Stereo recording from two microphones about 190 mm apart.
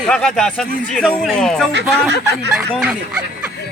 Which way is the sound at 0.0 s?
5° left (ahead or behind).